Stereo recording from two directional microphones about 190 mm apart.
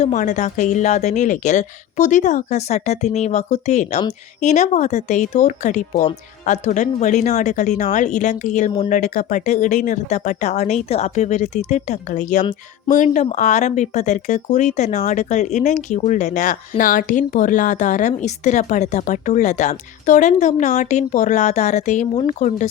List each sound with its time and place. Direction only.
0.0 s speech: 40° left (ahead or behind)